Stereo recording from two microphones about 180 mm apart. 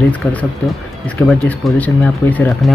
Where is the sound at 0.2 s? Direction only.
10° left (ahead or behind).